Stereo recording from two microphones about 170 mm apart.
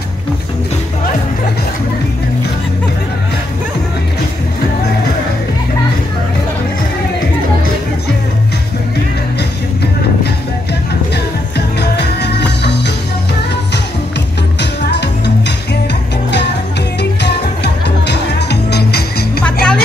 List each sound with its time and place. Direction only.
12.2 s music: 85° left
14.6 s music: 85° left
17.8 s music: 80° left
19.4 s music: 5° left (ahead or behind)